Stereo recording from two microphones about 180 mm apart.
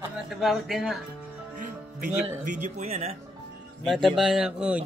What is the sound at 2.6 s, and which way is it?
Speech, 40° right (ahead or behind).